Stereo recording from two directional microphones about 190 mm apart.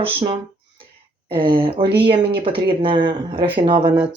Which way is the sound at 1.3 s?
25° right (ahead or behind).